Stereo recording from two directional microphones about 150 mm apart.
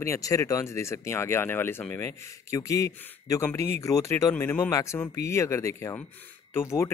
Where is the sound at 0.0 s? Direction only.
20° left (ahead or behind).